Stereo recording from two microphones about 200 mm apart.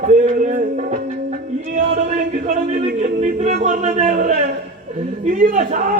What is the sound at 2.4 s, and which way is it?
Speech, 45° right (ahead or behind).